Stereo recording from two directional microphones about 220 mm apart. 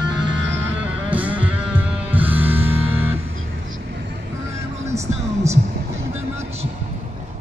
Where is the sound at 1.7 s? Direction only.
5° right (ahead or behind).